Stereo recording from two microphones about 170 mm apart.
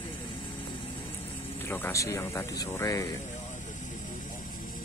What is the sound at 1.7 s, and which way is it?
Speech, 15° left (ahead or behind).